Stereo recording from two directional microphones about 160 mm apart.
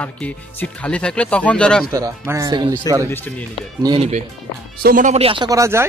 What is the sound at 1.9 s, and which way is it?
Speech, 20° right (ahead or behind).